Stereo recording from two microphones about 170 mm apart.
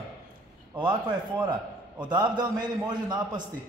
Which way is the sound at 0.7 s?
25° right (ahead or behind).